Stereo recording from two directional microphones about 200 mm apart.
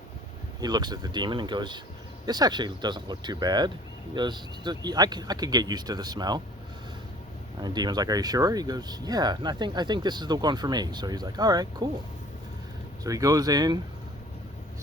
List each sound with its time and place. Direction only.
0.6 s speech: 20° right (ahead or behind)
7.6 s speech: 20° right (ahead or behind)
13.1 s speech: 15° right (ahead or behind)